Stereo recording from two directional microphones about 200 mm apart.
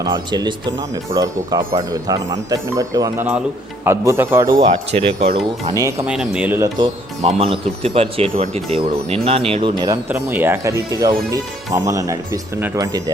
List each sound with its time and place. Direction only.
0.0 s speech: 20° right (ahead or behind)
4.6 s speech: 30° right (ahead or behind)
5.7 s speech: 15° right (ahead or behind)
6.1 s speech: 5° right (ahead or behind)
6.7 s speech: 30° right (ahead or behind)